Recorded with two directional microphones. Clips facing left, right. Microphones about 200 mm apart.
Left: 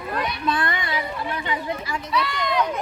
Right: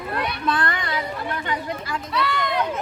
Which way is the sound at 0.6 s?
20° left (ahead or behind).